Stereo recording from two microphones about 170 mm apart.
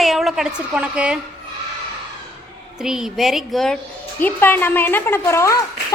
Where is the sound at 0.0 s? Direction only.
Centre (ahead or behind).